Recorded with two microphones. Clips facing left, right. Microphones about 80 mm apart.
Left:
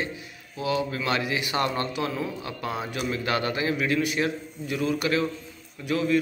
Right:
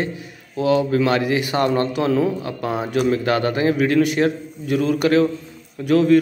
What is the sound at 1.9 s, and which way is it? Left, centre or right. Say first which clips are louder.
Speech: right 10 dB; right.